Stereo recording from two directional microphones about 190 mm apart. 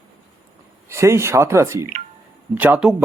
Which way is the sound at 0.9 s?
15° right (ahead or behind).